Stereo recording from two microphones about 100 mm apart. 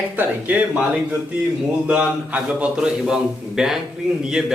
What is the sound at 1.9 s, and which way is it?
A man's voice, 10° right (ahead or behind).